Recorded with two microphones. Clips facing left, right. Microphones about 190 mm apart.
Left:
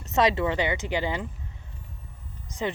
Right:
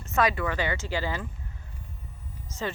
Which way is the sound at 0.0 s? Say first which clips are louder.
Left 3 dB; 20° left (ahead or behind).